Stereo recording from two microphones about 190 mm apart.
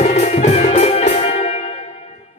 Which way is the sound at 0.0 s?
35° left (ahead or behind).